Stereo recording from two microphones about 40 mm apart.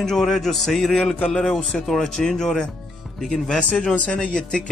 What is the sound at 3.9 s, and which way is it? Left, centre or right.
Speech, centre.